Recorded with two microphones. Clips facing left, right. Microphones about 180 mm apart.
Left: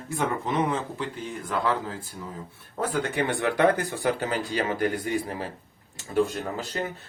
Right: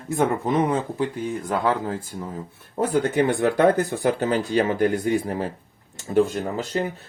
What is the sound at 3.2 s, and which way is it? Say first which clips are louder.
Speech: right 3 dB; 45° right (ahead or behind).